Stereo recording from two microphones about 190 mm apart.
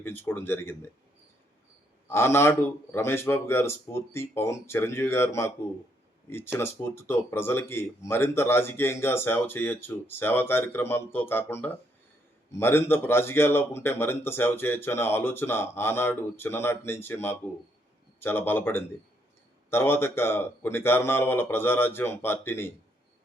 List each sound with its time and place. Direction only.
0.0 s speech: 10° left (ahead or behind)
2.0 s speech: 15° left (ahead or behind)